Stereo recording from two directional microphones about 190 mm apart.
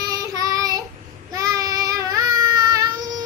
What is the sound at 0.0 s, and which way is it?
Child singing, 20° right (ahead or behind).